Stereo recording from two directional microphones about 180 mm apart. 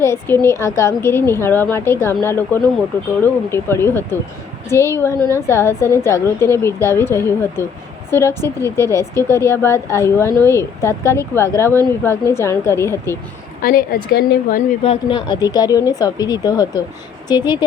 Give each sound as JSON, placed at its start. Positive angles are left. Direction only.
{"t": 0.0, "sound": "a woman's voice", "side_deg": 15}
{"t": 13.6, "sound": "a woman's voice", "side_deg": 55}
{"t": 14.8, "sound": "speech", "side_deg": 25}